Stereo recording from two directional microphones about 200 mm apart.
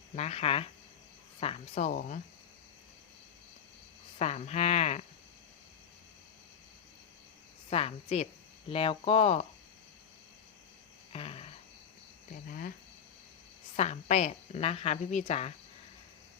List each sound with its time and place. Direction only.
0.2 s a woman's voice: 30° left (ahead or behind)
4.2 s a woman's voice: 35° left (ahead or behind)
7.7 s a woman's voice: 30° left (ahead or behind)
11.1 s a sound: 30° left (ahead or behind)
12.5 s speech: 45° left (ahead or behind)
13.7 s a woman's voice: 35° left (ahead or behind)